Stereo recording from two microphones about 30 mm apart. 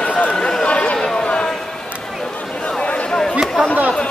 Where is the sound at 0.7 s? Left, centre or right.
Left.